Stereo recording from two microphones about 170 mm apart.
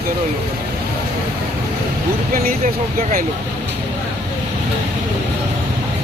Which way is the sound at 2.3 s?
55° right (ahead or behind).